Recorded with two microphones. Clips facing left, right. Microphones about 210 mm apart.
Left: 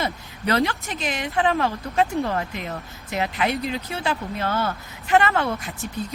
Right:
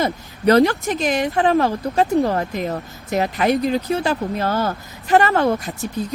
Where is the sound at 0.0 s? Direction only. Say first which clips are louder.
Right 9 dB; 40° right (ahead or behind).